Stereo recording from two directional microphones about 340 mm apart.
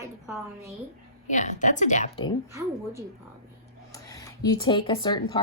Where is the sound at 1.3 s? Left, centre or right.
Left.